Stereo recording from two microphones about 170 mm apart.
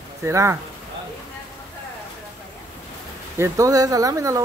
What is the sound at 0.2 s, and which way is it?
Speech, 15° right (ahead or behind).